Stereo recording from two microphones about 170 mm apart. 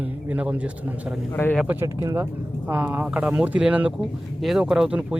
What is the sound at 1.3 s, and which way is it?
Speech, 10° left (ahead or behind).